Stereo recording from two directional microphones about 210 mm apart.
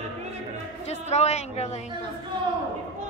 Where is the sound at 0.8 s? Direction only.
30° left (ahead or behind).